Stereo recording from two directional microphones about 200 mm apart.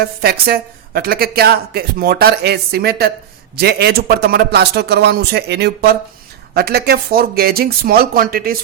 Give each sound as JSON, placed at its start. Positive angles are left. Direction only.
{"t": 0.0, "sound": "a woman's voice", "side_deg": -50}